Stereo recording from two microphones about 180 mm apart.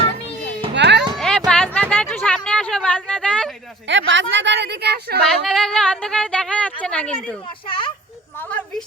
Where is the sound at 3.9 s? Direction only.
90° right; by 5.1 s 65° right (ahead or behind).